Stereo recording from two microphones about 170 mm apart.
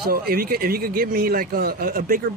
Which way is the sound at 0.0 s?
65° right (ahead or behind).